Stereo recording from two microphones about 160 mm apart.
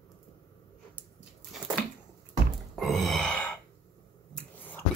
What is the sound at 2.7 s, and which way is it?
Gasp, centre (ahead or behind).